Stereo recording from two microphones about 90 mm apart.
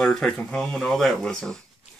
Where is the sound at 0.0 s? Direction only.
5° left (ahead or behind).